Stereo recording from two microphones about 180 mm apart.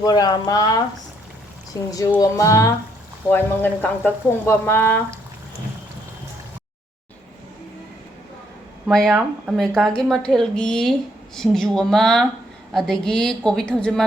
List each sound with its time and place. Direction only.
0.0 s speech: 20° left (ahead or behind)
1.9 s speech: 20° left (ahead or behind)
8.9 s a woman's voice: centre (ahead or behind)